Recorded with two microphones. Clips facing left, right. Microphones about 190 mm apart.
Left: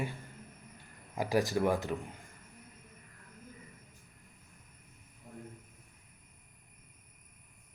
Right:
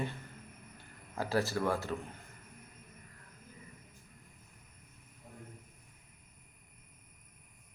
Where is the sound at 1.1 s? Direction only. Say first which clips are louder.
Left 3 dB; 15° left (ahead or behind).